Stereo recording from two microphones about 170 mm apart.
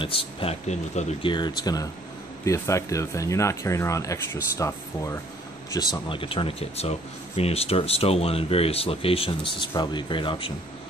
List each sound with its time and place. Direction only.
0.0 s speech: 30° left (ahead or behind)
1.3 s speech: 25° left (ahead or behind)